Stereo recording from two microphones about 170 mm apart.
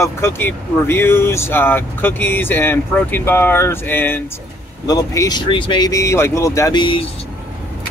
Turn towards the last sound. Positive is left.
turn(degrees=30)  # may be behind; listen again after turning